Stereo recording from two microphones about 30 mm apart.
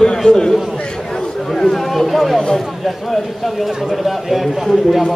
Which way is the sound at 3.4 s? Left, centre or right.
Centre.